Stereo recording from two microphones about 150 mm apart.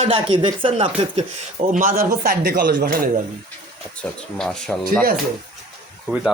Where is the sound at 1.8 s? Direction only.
70° right (ahead or behind).